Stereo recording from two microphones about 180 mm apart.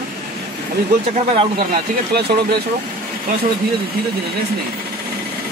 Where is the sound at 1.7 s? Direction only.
65° right (ahead or behind).